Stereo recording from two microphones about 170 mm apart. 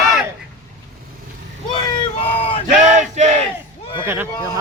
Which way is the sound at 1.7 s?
25° left (ahead or behind).